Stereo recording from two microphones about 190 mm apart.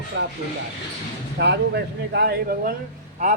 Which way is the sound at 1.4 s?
60° right (ahead or behind).